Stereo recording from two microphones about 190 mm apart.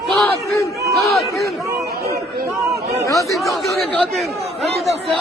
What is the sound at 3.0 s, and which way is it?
Speech, 15° left (ahead or behind).